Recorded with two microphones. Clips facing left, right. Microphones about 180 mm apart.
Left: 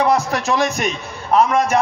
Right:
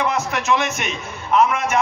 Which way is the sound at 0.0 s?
35° left (ahead or behind).